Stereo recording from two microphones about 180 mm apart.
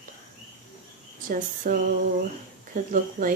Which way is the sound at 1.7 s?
55° right (ahead or behind).